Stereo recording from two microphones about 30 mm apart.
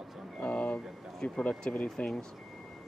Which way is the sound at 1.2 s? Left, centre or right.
Left.